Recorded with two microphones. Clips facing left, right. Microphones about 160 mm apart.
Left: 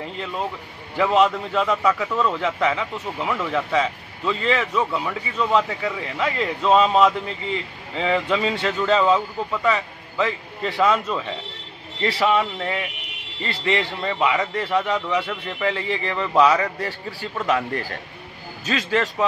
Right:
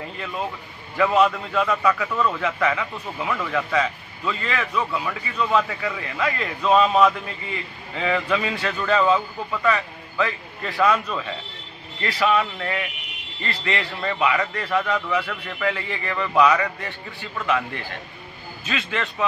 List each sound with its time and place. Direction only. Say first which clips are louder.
0.9 s a man's voice: left 1 dB; 20° left (ahead or behind)